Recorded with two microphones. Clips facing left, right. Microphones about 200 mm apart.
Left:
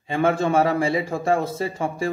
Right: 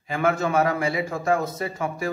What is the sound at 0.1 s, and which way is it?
A man's voice, 30° left (ahead or behind).